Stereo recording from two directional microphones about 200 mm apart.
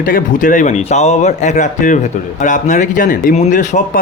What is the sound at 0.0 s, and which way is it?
Speech, 40° left (ahead or behind).